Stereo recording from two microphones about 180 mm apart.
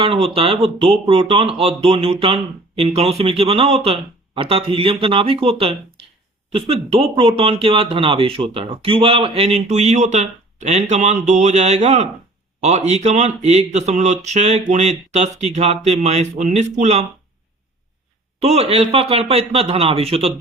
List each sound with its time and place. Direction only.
0.0 s speech: 30° right (ahead or behind)
18.3 s speech: 35° right (ahead or behind)